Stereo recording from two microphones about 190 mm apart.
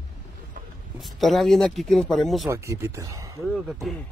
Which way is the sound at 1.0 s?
Centre (ahead or behind).